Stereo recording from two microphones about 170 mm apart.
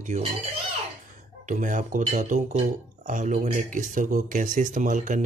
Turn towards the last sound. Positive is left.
turn(degrees=-50)  # may be behind; listen again after turning